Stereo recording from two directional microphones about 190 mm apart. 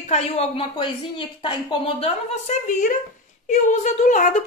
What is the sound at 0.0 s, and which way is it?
A woman's voice, 35° left (ahead or behind).